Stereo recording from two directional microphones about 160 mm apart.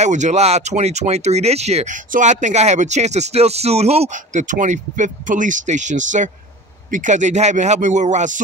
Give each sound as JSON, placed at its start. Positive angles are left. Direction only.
{"t": 0.0, "sound": "speech", "side_deg": -45}